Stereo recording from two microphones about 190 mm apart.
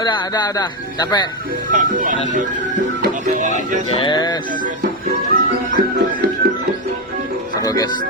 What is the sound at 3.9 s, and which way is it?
Speech, 25° left (ahead or behind).